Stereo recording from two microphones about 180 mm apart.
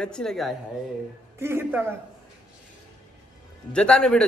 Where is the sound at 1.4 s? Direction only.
15° right (ahead or behind).